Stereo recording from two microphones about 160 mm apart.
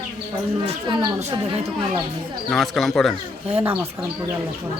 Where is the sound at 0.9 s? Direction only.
25° right (ahead or behind).